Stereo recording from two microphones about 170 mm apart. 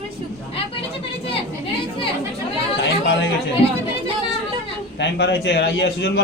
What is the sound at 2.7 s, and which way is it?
Speech, 90° left.